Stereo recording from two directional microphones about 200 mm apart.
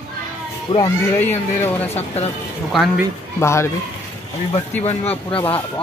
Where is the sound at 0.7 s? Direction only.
20° left (ahead or behind).